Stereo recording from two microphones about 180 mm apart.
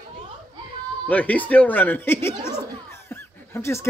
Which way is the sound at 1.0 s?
10° left (ahead or behind).